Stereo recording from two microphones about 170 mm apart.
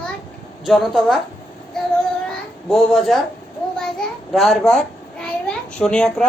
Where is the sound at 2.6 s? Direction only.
Centre (ahead or behind).